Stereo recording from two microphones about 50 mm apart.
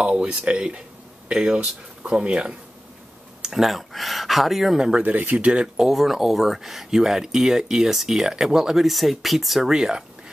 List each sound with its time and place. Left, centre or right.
0.0 s speech: centre
3.6 s speech: centre
4.7 s speech: centre
5.0 s speech: right
5.8 s speech: centre